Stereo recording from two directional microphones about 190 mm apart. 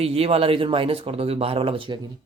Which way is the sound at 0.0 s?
30° right (ahead or behind).